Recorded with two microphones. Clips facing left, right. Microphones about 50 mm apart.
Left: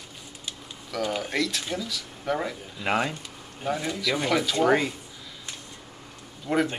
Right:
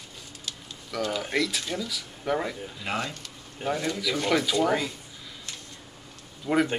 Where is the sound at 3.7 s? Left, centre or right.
Centre.